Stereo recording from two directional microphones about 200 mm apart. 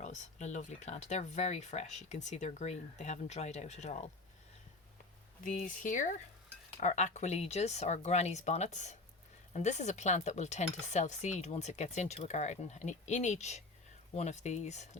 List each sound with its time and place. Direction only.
0.0 s dishes: 35° left (ahead or behind)
5.4 s dishes: 40° left (ahead or behind)